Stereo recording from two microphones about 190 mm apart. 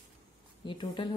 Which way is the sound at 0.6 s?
25° left (ahead or behind).